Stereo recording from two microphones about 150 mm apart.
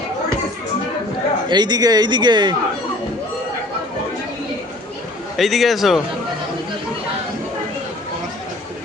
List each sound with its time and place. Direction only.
1.5 s speech: 30° right (ahead or behind)
5.4 s a man's voice: centre (ahead or behind)